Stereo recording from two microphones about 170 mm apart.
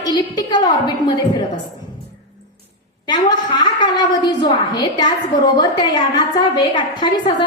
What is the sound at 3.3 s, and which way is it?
A woman's voice, 25° left (ahead or behind).